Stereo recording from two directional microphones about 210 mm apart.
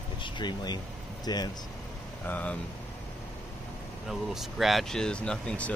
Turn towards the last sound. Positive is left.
turn(degrees=5)  # may be behind; listen again after turning